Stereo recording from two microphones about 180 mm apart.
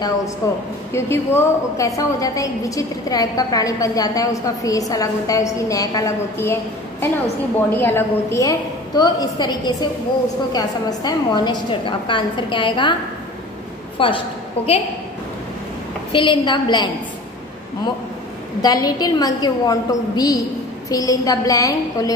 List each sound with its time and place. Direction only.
0.4 s a woman's voice: 20° left (ahead or behind)
13.9 s a woman's voice: 30° left (ahead or behind)
16.1 s a woman's voice: 25° left (ahead or behind)
18.6 s a woman's voice: 20° left (ahead or behind)